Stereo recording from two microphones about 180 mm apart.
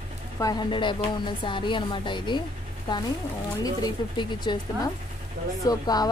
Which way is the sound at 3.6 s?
20° left (ahead or behind).